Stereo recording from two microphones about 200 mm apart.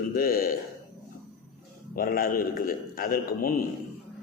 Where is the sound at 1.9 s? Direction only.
45° left (ahead or behind).